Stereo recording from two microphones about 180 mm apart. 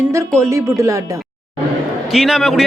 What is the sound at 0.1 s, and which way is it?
Speech, 15° right (ahead or behind).